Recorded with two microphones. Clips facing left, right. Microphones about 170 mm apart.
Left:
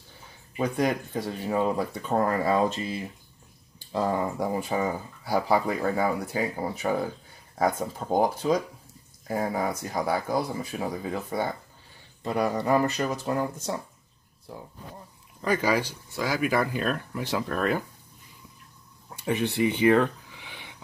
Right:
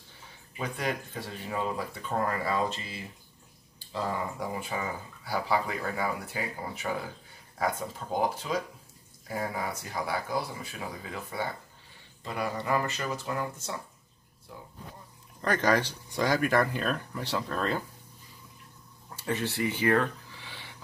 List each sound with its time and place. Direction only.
0.6 s speech: 40° left (ahead or behind)
15.4 s speech: 10° left (ahead or behind)
19.0 s a sound: 15° left (ahead or behind)